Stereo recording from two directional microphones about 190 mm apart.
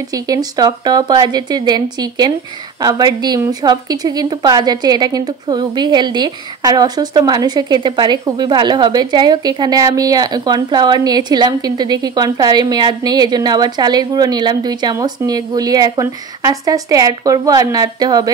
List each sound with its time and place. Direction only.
0.1 s a woman's voice: 20° right (ahead or behind)